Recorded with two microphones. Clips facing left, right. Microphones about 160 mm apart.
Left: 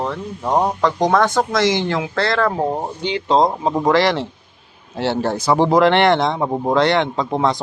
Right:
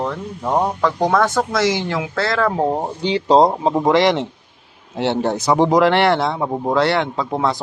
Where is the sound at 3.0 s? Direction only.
35° right (ahead or behind).